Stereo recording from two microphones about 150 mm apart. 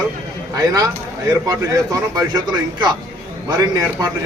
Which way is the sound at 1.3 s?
25° right (ahead or behind).